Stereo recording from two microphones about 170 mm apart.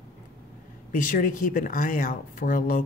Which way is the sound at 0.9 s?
55° left (ahead or behind).